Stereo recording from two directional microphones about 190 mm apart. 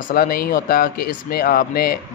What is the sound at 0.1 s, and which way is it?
Speech, 50° left (ahead or behind).